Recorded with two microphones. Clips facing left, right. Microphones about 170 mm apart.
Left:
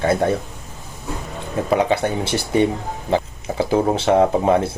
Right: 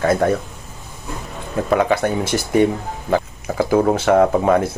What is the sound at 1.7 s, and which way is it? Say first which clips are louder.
Speech: right 1 dB; 15° left (ahead or behind).